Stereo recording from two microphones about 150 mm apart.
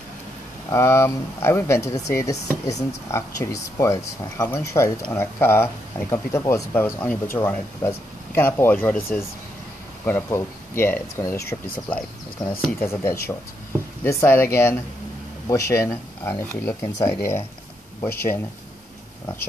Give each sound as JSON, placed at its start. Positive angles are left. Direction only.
{"t": 0.7, "sound": "speech", "side_deg": 20}
{"t": 12.8, "sound": "speech", "side_deg": 15}